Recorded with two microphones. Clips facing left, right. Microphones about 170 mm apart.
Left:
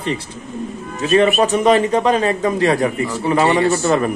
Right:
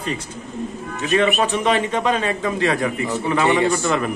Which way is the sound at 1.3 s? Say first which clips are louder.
Left 5 dB; 40° left (ahead or behind).